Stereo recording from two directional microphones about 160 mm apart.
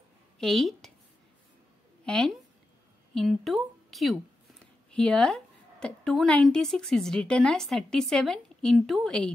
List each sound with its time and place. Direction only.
0.4 s a woman's voice: centre (ahead or behind)
2.0 s a woman's voice: 5° left (ahead or behind)